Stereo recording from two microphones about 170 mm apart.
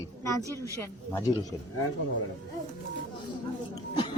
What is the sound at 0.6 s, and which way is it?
Speech, 20° left (ahead or behind).